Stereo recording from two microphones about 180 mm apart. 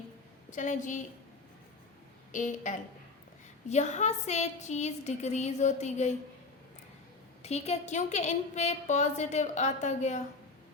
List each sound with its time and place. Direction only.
0.5 s a woman's voice: 45° left (ahead or behind)
2.3 s a woman's voice: 45° left (ahead or behind)
7.4 s a woman's voice: 35° left (ahead or behind)